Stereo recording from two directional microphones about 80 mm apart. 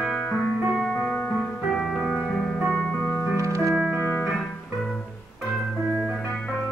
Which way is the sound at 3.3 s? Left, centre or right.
Right.